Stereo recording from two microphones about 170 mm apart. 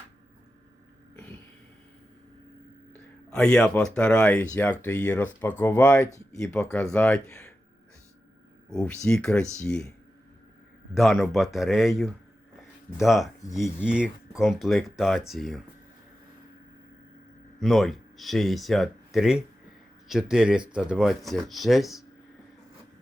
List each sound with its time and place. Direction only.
1.1 s a sound: 10° left (ahead or behind)
2.9 s speech: 5° left (ahead or behind)
6.7 s speech: 5° left (ahead or behind)
8.7 s speech: 5° left (ahead or behind)
10.9 s speech: centre (ahead or behind)
17.6 s speech: centre (ahead or behind)